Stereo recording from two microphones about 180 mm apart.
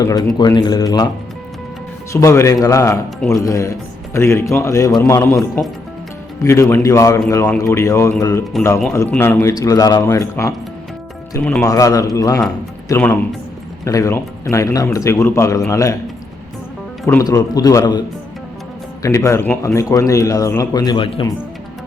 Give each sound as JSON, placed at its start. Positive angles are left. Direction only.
{"t": 0.0, "sound": "speech", "side_deg": 20}
{"t": 2.2, "sound": "speech", "side_deg": 15}
{"t": 6.4, "sound": "speech", "side_deg": 15}
{"t": 11.6, "sound": "speech", "side_deg": 20}
{"t": 17.1, "sound": "speech", "side_deg": 20}
{"t": 19.0, "sound": "speech", "side_deg": 15}